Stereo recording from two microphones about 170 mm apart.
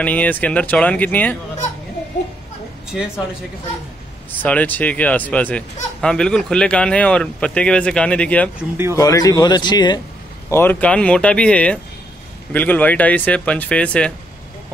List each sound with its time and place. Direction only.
0.0 s speech: 10° left (ahead or behind)
4.3 s speech: 10° left (ahead or behind)
8.9 s speech: 20° left (ahead or behind)
10.5 s speech: 10° left (ahead or behind)